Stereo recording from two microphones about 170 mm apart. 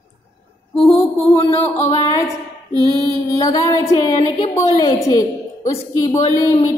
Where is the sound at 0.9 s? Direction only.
15° left (ahead or behind).